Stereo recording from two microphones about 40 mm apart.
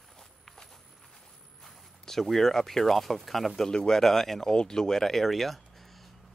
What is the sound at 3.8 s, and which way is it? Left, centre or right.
Speech, centre.